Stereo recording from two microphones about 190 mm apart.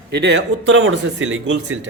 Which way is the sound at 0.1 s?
65° right (ahead or behind).